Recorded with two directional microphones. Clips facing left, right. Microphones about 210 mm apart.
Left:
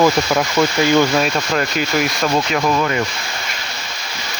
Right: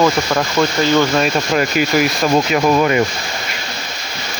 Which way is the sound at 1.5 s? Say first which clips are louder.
Right 5 dB; 5° right (ahead or behind).